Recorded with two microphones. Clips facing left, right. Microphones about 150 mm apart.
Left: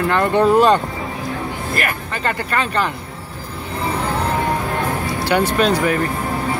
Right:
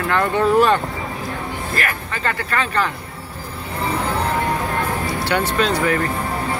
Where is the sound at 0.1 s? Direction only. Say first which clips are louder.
Left 2 dB; 20° left (ahead or behind).